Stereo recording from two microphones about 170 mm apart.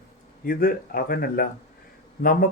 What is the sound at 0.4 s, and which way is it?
Speech, 60° left (ahead or behind).